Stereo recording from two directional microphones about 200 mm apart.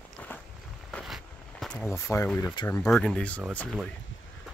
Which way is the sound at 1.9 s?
15° left (ahead or behind).